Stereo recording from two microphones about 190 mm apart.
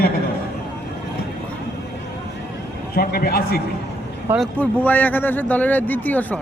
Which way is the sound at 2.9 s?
50° left (ahead or behind).